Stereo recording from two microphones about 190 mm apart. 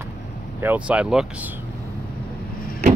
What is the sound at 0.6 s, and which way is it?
Speech, 10° right (ahead or behind).